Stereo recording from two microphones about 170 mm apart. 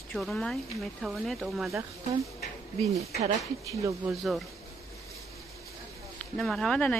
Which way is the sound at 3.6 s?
20° right (ahead or behind).